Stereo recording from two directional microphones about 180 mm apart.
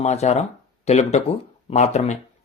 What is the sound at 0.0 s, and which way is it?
Speech, 40° left (ahead or behind).